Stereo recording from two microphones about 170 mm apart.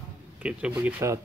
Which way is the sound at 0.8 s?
15° right (ahead or behind).